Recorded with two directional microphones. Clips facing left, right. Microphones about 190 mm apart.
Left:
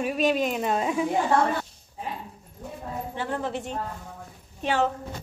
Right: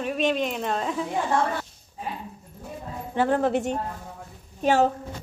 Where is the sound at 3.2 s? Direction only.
70° right (ahead or behind).